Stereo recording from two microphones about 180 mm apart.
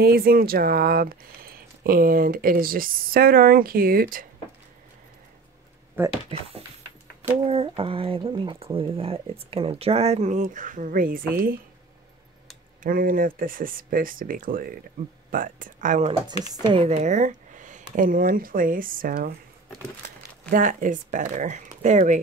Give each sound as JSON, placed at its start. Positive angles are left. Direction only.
{"t": 0.0, "sound": "speech", "side_deg": -55}
{"t": 6.0, "sound": "speech", "side_deg": -10}
{"t": 7.4, "sound": "speech", "side_deg": -30}
{"t": 12.8, "sound": "speech", "side_deg": -50}
{"t": 16.6, "sound": "speech", "side_deg": -30}
{"t": 20.5, "sound": "speech", "side_deg": -45}